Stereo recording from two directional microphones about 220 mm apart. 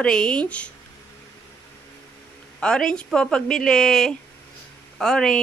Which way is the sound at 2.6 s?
5° left (ahead or behind).